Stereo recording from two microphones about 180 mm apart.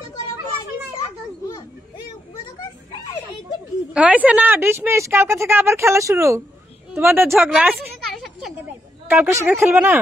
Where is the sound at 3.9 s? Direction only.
10° right (ahead or behind).